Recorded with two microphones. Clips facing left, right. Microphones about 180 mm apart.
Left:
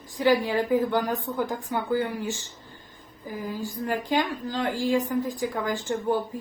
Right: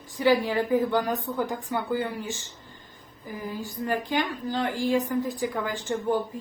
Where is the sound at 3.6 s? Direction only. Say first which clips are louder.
Right 1 dB; 10° left (ahead or behind).